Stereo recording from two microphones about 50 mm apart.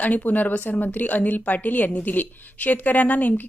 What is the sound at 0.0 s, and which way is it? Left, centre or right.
A woman's voice, left.